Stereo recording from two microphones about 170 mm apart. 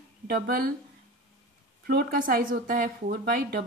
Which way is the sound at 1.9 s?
60° right (ahead or behind).